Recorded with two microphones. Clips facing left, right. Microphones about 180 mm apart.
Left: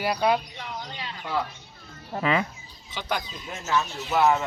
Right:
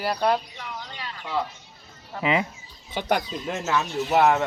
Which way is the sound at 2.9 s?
55° right (ahead or behind).